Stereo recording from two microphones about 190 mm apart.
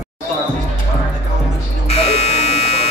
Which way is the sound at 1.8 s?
35° left (ahead or behind).